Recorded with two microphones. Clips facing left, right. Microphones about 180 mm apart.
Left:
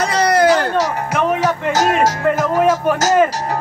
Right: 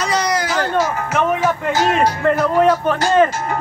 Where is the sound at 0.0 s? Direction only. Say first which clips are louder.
Left 5 dB; 60° left (ahead or behind).